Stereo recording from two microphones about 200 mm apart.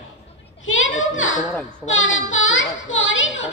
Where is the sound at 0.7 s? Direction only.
75° left (ahead or behind).